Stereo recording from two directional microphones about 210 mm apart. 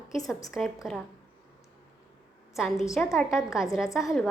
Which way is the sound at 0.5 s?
Centre (ahead or behind).